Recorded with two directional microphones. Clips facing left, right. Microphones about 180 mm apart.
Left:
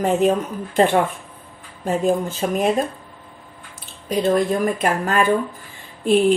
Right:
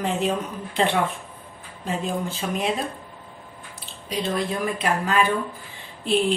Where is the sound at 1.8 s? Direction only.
45° left (ahead or behind).